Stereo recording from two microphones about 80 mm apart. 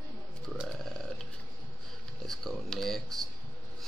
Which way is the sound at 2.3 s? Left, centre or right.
Centre.